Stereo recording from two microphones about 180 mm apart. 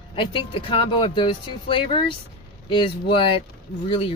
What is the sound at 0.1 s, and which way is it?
Speech, 30° left (ahead or behind).